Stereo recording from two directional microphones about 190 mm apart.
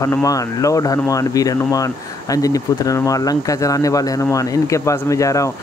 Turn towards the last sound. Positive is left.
turn(degrees=15)  # may be behind; listen again after turning